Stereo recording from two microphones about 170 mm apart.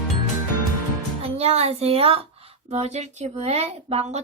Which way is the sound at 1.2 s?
35° right (ahead or behind).